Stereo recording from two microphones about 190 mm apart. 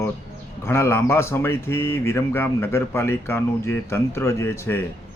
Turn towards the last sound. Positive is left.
turn(degrees=15)  # may be behind; listen again after turning